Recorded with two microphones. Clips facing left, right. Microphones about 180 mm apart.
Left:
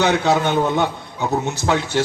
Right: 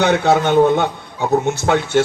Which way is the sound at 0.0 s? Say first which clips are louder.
Right 3 dB; 60° right (ahead or behind).